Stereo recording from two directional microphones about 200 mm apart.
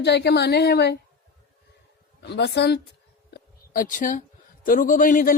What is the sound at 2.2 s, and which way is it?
Speech, 55° left (ahead or behind).